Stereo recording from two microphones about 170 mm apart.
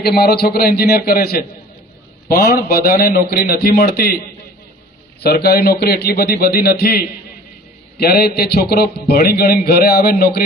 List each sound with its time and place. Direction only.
0.0 s a man's voice: 70° left (ahead or behind)
5.2 s a man's voice: 70° left (ahead or behind)